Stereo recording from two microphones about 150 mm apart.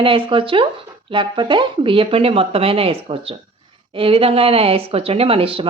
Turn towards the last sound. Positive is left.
turn(degrees=-40)  # may be behind; listen again after turning